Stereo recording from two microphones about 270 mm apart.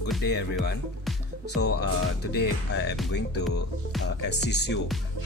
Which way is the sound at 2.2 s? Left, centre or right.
Left.